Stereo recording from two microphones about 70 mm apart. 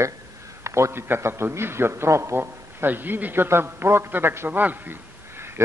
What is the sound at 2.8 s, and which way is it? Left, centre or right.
A man's voice, right.